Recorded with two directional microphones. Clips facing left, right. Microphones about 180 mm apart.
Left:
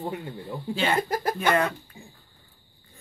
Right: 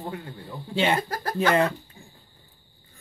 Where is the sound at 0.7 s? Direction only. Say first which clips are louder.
Right 2 dB; 25° right (ahead or behind).